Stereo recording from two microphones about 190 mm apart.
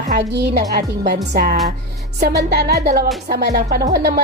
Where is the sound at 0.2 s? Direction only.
60° right (ahead or behind).